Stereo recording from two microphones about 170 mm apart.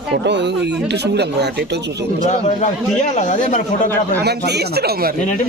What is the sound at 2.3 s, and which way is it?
A man's voice, 45° left (ahead or behind).